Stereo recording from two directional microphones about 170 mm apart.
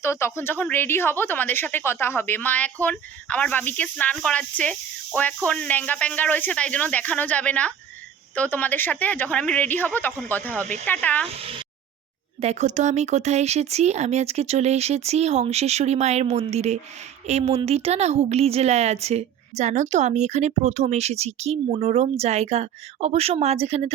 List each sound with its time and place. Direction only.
0.0 s a woman's voice: 15° left (ahead or behind)
12.4 s a woman's voice: 40° right (ahead or behind)